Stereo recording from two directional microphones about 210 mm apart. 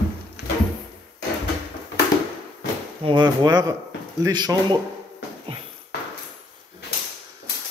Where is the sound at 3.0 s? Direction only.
20° right (ahead or behind).